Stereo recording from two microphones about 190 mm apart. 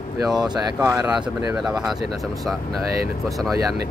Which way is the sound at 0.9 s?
5° right (ahead or behind).